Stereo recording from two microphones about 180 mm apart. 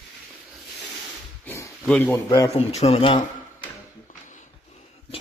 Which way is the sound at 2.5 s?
35° left (ahead or behind).